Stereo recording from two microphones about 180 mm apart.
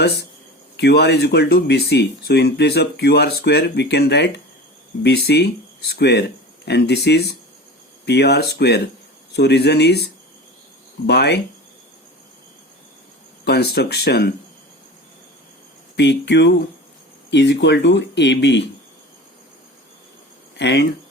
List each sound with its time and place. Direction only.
0.8 s speech: 65° left (ahead or behind)
13.4 s speech: 65° left (ahead or behind)
16.0 s speech: 75° left (ahead or behind)
20.6 s speech: 70° left (ahead or behind)